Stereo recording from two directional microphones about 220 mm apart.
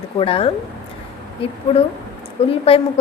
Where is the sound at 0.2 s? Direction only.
25° left (ahead or behind).